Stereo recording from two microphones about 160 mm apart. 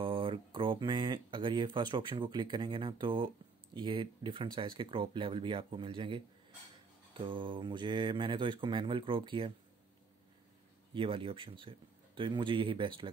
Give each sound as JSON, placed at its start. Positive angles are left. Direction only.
{"t": 0.0, "sound": "speech", "side_deg": -35}
{"t": 11.0, "sound": "speech", "side_deg": -35}